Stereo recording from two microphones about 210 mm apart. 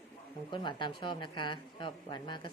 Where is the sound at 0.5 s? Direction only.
20° left (ahead or behind).